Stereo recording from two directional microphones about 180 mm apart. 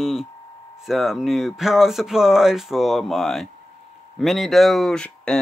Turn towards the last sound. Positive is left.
turn(degrees=5)  # may be behind; listen again after turning